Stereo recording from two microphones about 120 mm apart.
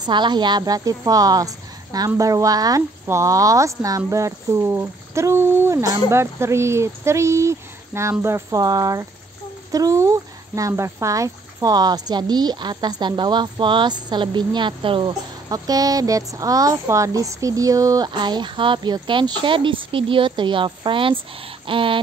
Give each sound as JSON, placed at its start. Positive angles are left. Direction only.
{"t": 0.0, "sound": "a woman's voice", "side_deg": -40}
{"t": 15.5, "sound": "speech", "side_deg": -30}
{"t": 21.6, "sound": "a sound", "side_deg": -45}